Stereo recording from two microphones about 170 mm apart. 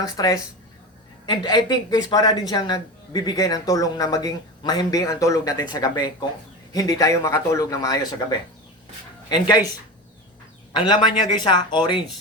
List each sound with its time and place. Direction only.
0.0 s speech: 20° left (ahead or behind)
10.7 s speech: 25° left (ahead or behind)